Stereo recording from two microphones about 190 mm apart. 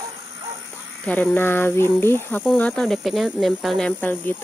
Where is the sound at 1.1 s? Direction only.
10° left (ahead or behind).